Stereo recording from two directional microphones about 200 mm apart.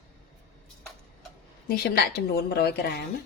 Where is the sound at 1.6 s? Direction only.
50° left (ahead or behind).